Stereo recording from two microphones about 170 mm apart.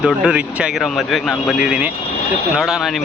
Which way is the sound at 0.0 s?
5° right (ahead or behind).